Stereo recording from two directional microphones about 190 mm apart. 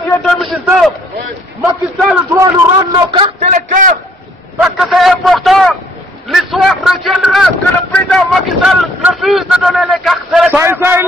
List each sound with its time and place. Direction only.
0.2 s speech: 5° left (ahead or behind)
1.6 s speech: 5° right (ahead or behind)
2.3 s a man's voice: 20° right (ahead or behind)
3.4 s a man's voice: 45° right (ahead or behind)
4.6 s a man's voice: 5° right (ahead or behind)